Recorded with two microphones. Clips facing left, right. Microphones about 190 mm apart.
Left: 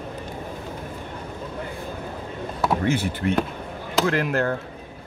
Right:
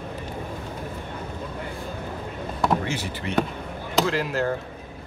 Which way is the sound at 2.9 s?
55° left (ahead or behind).